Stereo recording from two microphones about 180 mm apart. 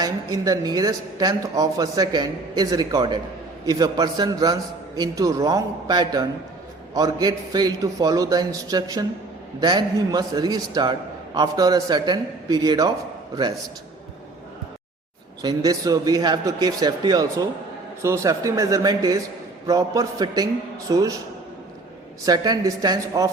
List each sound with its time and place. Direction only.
0.0 s speech: 20° right (ahead or behind)
15.4 s a man's voice: 20° right (ahead or behind)
22.3 s speech: 20° right (ahead or behind)